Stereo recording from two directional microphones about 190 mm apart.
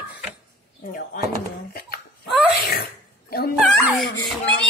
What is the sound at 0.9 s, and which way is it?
Bird, 50° left (ahead or behind).